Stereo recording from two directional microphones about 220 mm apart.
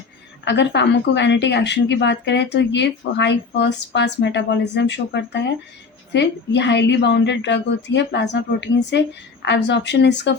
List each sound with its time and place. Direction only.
0.4 s speech: 50° left (ahead or behind)